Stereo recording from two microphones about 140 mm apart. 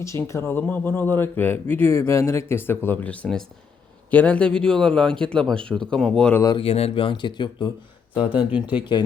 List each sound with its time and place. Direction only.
0.0 s speech: 20° left (ahead or behind)
6.6 s speech: 45° left (ahead or behind)
8.5 s speech: 10° right (ahead or behind)